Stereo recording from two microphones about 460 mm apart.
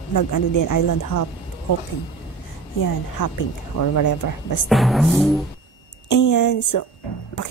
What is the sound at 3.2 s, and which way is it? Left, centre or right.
Speech, left.